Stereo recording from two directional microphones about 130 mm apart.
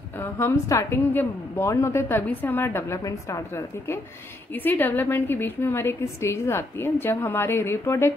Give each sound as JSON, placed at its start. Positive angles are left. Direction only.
{"t": 0.2, "sound": "a woman's voice", "side_deg": 20}